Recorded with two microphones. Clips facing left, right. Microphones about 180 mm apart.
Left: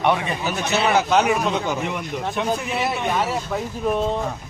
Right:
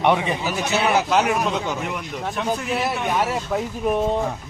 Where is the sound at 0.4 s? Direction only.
5° right (ahead or behind).